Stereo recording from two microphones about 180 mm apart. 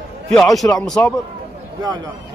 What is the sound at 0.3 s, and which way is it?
Speech, centre (ahead or behind).